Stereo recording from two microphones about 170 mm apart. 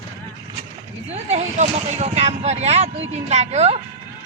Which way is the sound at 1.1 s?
40° right (ahead or behind).